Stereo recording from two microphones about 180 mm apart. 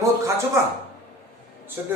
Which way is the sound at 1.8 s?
10° right (ahead or behind).